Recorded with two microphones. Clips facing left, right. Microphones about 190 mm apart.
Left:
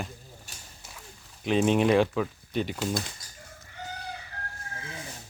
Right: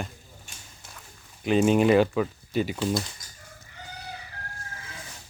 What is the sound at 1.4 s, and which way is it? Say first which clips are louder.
Speech: right 3 dB; centre (ahead or behind).